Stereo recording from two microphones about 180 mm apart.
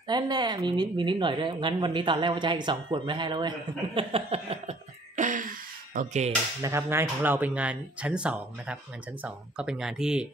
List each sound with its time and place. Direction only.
0.1 s a woman's voice: 25° right (ahead or behind); by 6.3 s 40° right (ahead or behind)
6.6 s speech: 15° right (ahead or behind)